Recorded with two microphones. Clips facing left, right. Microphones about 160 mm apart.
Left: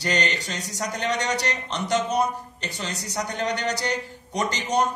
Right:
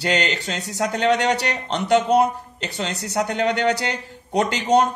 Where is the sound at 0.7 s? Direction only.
60° right (ahead or behind).